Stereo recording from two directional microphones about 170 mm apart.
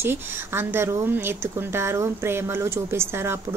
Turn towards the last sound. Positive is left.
turn(degrees=-15)  # may be behind; listen again after turning